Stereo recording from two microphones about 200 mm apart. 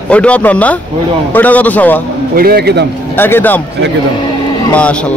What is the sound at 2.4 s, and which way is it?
Speech, 50° right (ahead or behind).